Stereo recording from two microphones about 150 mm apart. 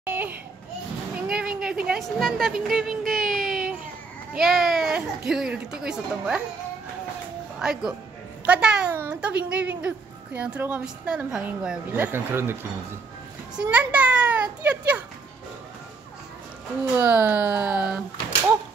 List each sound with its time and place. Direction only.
0.0 s a sound: 10° right (ahead or behind)
1.3 s a woman's voice: 5° right (ahead or behind)
7.5 s a woman's voice: 5° right (ahead or behind)
13.6 s a child's voice: 10° right (ahead or behind)
16.9 s a woman's voice: 10° right (ahead or behind)